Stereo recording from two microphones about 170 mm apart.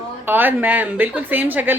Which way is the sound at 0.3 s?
10° right (ahead or behind).